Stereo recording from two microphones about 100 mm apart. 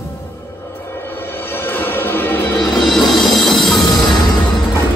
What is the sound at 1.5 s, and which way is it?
Music, 20° left (ahead or behind).